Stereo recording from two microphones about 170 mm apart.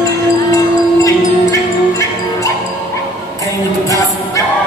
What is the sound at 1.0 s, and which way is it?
Music, 20° left (ahead or behind).